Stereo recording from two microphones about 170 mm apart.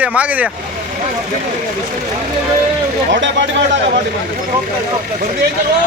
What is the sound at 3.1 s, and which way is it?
Speech, 90° right.